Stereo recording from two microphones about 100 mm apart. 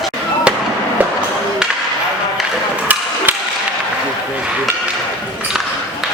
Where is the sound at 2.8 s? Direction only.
15° right (ahead or behind).